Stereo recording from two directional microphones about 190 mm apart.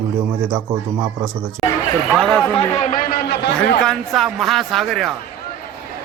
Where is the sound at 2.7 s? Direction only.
40° left (ahead or behind); by 3.7 s 60° left (ahead or behind).